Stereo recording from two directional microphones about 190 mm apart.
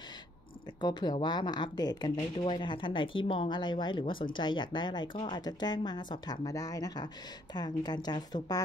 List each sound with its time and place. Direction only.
0.7 s speech: 20° left (ahead or behind)